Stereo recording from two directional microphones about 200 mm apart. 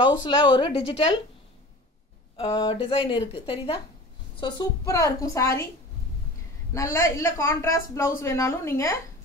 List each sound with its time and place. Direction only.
0.2 s speech: 20° left (ahead or behind)
2.3 s a woman's voice: 25° left (ahead or behind)
6.7 s a woman's voice: 15° left (ahead or behind)